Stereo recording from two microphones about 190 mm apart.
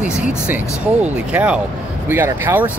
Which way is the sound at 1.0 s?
5° right (ahead or behind).